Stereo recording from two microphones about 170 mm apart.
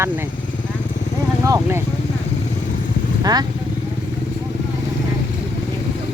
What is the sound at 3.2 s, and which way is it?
Speech, 25° right (ahead or behind).